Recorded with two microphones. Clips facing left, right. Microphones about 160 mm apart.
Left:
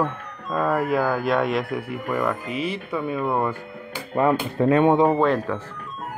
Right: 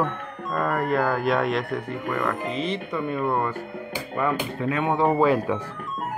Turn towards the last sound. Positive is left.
turn(degrees=-10)  # may be behind; listen again after turning